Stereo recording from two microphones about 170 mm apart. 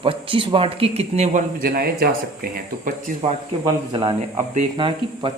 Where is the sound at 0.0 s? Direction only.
30° right (ahead or behind); by 3.2 s 55° right (ahead or behind).